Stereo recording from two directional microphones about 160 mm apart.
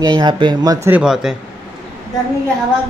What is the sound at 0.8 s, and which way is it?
Speech, 5° right (ahead or behind).